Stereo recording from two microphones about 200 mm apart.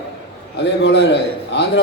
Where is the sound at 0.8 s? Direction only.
60° left (ahead or behind).